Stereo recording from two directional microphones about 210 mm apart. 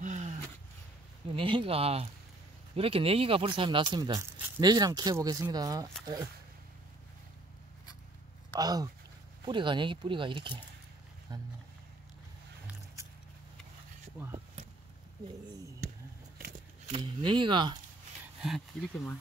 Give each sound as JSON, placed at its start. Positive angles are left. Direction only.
{"t": 0.0, "sound": "a sound", "side_deg": -35}
{"t": 1.3, "sound": "speech", "side_deg": -25}
{"t": 8.5, "sound": "speech", "side_deg": -20}
{"t": 16.9, "sound": "speech", "side_deg": -25}
{"t": 18.4, "sound": "speech", "side_deg": 0}